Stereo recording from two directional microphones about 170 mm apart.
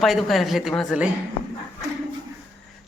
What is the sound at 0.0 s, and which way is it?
A man's voice, centre (ahead or behind).